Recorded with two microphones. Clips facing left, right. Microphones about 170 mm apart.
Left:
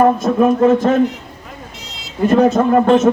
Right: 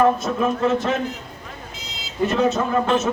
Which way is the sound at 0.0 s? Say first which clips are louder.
Left 6 dB; 50° left (ahead or behind).